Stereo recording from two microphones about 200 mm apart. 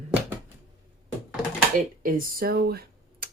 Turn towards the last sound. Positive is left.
turn(degrees=-50)  # may be behind; listen again after turning